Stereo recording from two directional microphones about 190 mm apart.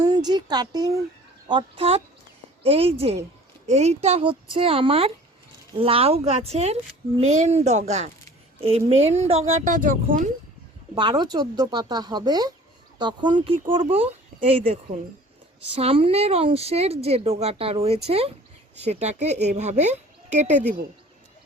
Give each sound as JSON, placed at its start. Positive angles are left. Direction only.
{"t": 0.0, "sound": "speech", "side_deg": -20}
{"t": 10.9, "sound": "speech", "side_deg": -25}